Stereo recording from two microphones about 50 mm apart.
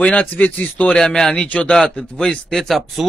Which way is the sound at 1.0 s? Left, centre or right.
Centre.